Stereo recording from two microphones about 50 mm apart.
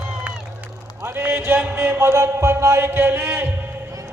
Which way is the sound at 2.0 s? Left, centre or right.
Right.